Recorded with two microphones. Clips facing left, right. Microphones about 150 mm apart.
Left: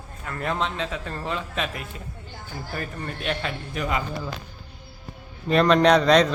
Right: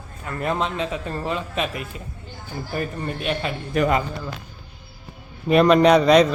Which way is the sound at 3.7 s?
60° right (ahead or behind).